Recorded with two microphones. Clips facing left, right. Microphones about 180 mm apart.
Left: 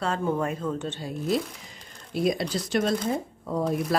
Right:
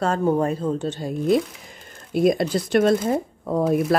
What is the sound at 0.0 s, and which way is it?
Speech, 40° right (ahead or behind).